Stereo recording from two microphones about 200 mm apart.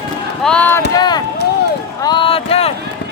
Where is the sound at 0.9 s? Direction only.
20° left (ahead or behind).